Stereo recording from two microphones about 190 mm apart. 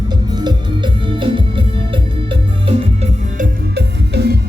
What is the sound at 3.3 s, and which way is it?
Music, 60° right (ahead or behind).